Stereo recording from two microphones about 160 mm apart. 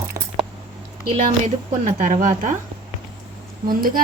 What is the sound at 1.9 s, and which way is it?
Speech, 50° right (ahead or behind).